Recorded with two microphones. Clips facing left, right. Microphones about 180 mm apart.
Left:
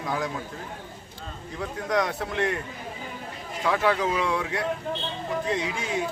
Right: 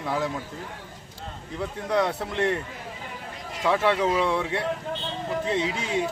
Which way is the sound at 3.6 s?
25° right (ahead or behind).